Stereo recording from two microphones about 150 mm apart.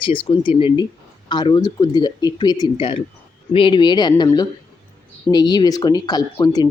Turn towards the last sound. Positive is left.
turn(degrees=25)  # may be behind; listen again after turning